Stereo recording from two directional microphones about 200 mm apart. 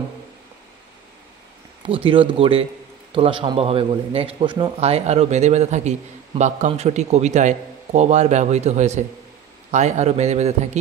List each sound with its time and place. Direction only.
1.9 s a man's voice: 25° right (ahead or behind)